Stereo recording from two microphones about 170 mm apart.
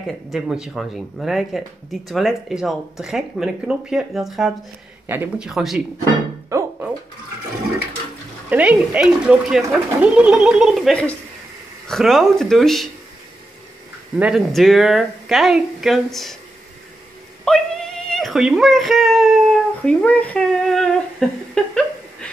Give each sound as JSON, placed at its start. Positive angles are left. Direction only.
{"t": 0.0, "sound": "speech", "side_deg": 0}
{"t": 5.0, "sound": "speech", "side_deg": -10}
{"t": 5.5, "sound": "speech", "side_deg": 0}
{"t": 6.5, "sound": "music", "side_deg": -15}
{"t": 8.5, "sound": "speech", "side_deg": -10}
{"t": 14.1, "sound": "speech", "side_deg": -5}
{"t": 17.5, "sound": "a sound", "side_deg": 5}
{"t": 21.6, "sound": "speech", "side_deg": 5}